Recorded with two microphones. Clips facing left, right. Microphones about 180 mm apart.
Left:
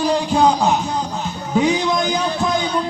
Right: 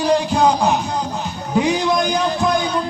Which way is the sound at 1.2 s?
15° right (ahead or behind).